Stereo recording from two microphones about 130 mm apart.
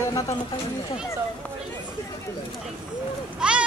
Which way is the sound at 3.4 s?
5° right (ahead or behind).